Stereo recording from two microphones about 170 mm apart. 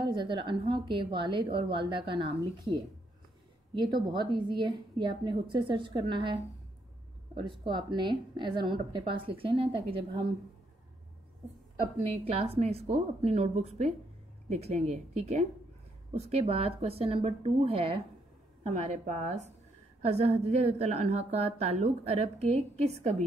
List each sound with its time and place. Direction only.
0.0 s a woman's voice: 30° right (ahead or behind)
3.7 s a woman's voice: 25° right (ahead or behind)
12.0 s a woman's voice: 35° right (ahead or behind)